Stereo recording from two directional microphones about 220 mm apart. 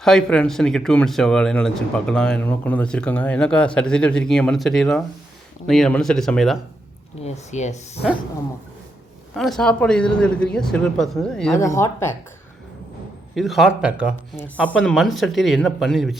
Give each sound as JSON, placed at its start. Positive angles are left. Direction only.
{"t": 0.0, "sound": "speech", "side_deg": 0}
{"t": 7.2, "sound": "speech", "side_deg": 30}
{"t": 9.3, "sound": "speech", "side_deg": 0}
{"t": 11.5, "sound": "speech", "side_deg": 15}
{"t": 13.3, "sound": "speech", "side_deg": 0}